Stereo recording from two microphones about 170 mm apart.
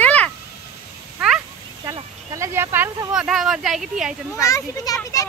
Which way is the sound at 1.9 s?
15° right (ahead or behind).